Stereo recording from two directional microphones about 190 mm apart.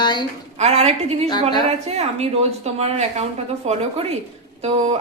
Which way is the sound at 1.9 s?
35° right (ahead or behind).